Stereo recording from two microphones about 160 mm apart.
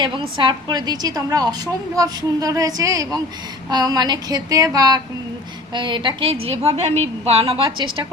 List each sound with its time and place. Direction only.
0.0 s a woman's voice: 30° right (ahead or behind)